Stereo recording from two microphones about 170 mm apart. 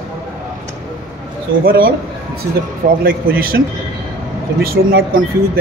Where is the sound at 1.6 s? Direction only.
60° right (ahead or behind).